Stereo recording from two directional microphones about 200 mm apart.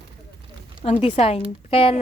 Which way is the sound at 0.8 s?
35° left (ahead or behind).